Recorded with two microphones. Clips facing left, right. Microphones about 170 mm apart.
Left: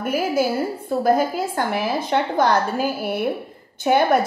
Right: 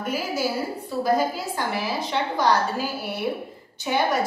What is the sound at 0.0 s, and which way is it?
A woman's voice, 55° left (ahead or behind).